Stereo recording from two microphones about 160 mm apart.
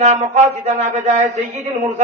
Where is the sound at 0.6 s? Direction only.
50° right (ahead or behind).